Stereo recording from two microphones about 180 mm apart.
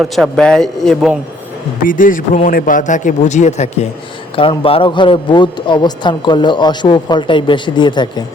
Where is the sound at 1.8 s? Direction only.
50° left (ahead or behind).